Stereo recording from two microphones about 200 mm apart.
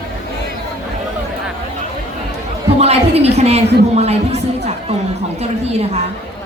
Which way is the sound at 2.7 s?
30° right (ahead or behind).